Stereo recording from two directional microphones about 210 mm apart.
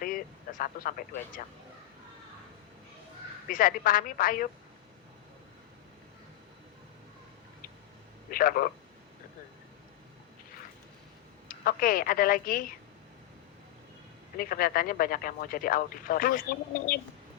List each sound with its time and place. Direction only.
0.6 s speech: 40° left (ahead or behind)
3.4 s speech: 40° left (ahead or behind)
8.3 s speech: 45° left (ahead or behind)
11.4 s a woman's voice: 40° left (ahead or behind)
14.3 s speech: 45° left (ahead or behind)